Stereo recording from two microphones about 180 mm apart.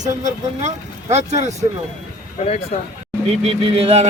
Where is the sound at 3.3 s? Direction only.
35° right (ahead or behind).